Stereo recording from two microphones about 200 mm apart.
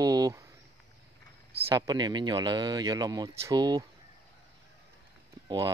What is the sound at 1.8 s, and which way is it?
Speech, 20° right (ahead or behind).